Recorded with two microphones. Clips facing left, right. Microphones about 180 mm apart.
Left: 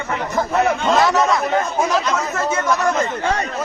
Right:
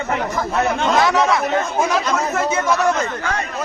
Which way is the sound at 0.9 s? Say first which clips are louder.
Even; centre (ahead or behind).